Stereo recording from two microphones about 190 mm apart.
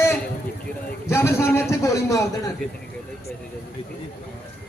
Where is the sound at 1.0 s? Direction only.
15° left (ahead or behind).